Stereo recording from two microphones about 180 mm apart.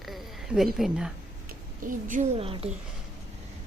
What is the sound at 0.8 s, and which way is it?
Speech, 5° right (ahead or behind).